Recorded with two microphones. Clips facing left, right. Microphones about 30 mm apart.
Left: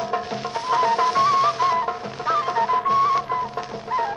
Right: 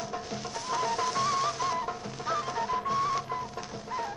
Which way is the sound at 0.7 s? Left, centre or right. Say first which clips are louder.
Left 10 dB; left.